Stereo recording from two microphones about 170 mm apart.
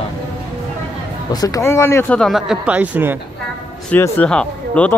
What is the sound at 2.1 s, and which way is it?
Speech, centre (ahead or behind).